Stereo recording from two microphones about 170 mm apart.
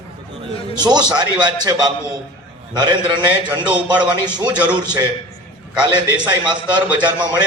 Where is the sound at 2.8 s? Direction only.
25° right (ahead or behind).